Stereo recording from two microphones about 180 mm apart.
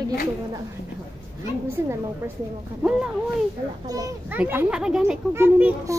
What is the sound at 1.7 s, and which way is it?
A child's voice, 10° right (ahead or behind).